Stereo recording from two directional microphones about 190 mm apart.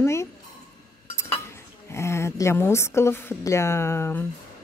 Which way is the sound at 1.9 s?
15° left (ahead or behind).